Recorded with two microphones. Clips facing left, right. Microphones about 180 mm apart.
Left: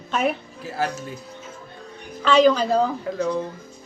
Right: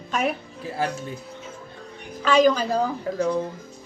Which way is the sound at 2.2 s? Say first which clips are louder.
Left 2 dB; 45° right (ahead or behind).